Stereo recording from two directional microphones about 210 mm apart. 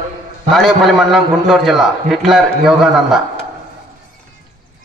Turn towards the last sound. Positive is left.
turn(degrees=0)  # may be behind; listen again after turning